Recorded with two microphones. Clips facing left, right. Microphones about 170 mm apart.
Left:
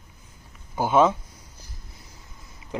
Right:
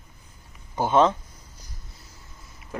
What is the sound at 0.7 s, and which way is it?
Speech, 5° left (ahead or behind).